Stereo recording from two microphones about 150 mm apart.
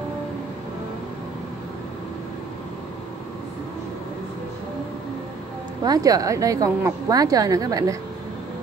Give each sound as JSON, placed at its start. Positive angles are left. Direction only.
{"t": 5.9, "sound": "a woman's voice", "side_deg": -25}